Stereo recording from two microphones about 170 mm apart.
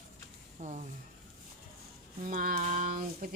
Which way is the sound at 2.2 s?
50° right (ahead or behind).